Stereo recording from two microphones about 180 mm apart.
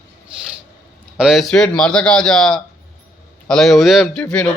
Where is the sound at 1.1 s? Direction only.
Centre (ahead or behind).